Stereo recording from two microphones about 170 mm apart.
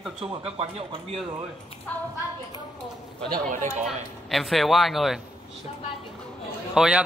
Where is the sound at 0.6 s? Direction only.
35° right (ahead or behind).